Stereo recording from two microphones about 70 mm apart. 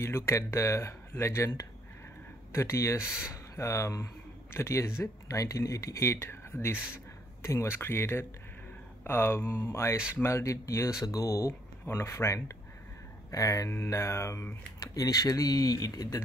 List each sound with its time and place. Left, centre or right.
0.0 s speech: left
2.5 s speech: left
11.8 s speech: left
14.8 s speech: left